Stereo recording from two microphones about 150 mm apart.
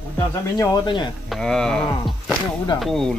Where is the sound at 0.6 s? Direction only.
25° left (ahead or behind).